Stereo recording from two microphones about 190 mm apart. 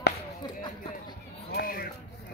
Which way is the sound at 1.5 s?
50° left (ahead or behind).